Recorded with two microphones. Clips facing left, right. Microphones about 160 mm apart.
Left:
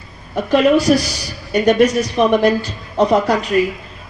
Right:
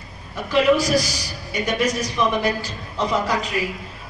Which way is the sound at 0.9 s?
55° left (ahead or behind).